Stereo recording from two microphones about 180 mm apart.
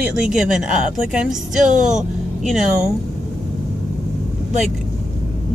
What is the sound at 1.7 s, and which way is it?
Speech, 45° right (ahead or behind).